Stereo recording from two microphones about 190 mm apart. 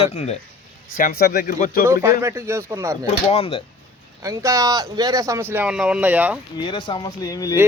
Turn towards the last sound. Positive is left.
turn(degrees=20)  # may be behind; listen again after turning